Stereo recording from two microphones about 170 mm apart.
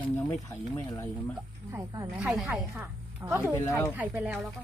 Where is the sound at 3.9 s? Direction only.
10° right (ahead or behind).